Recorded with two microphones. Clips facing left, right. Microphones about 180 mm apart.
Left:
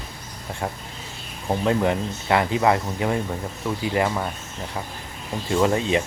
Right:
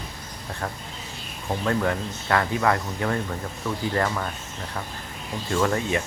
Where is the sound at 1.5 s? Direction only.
20° left (ahead or behind).